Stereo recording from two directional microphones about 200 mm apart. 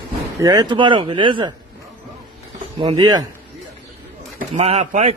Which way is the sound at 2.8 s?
25° right (ahead or behind).